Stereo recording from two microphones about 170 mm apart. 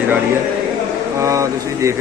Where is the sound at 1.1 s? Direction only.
20° right (ahead or behind).